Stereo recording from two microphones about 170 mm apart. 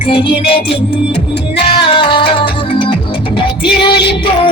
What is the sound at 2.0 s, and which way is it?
Music, 30° left (ahead or behind).